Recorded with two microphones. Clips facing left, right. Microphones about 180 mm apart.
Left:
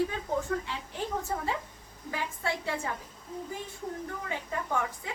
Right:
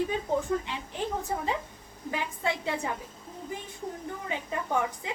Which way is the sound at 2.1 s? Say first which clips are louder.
Right 3 dB; 20° right (ahead or behind).